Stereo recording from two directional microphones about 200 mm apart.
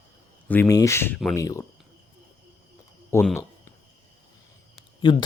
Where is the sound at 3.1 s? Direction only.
10° left (ahead or behind).